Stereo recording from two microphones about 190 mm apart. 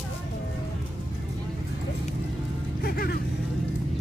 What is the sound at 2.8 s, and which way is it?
Speech, 55° left (ahead or behind).